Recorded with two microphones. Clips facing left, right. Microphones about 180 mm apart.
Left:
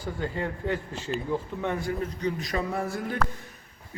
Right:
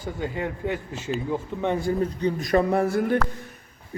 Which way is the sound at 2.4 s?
55° right (ahead or behind).